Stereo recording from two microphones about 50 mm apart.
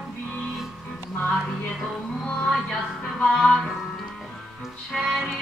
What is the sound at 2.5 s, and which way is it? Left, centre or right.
Music, centre.